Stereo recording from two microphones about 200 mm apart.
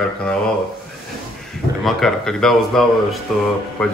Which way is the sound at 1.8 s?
Centre (ahead or behind).